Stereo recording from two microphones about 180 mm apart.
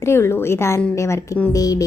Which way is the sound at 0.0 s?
15° left (ahead or behind).